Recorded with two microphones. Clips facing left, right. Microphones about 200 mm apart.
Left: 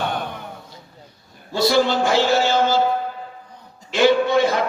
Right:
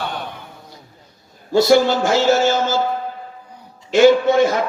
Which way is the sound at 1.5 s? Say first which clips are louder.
Right 4 dB; 45° right (ahead or behind).